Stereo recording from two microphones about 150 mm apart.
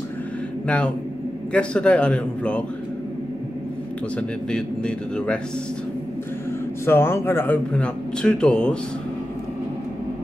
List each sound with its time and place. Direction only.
0.7 s speech: 10° left (ahead or behind)
4.2 s a man's voice: 5° left (ahead or behind)
6.9 s speech: 15° left (ahead or behind)